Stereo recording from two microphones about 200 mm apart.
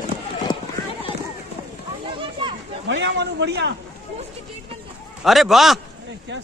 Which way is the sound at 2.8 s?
60° right (ahead or behind).